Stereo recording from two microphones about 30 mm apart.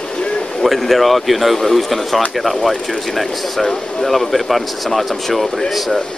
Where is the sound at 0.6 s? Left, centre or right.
Centre.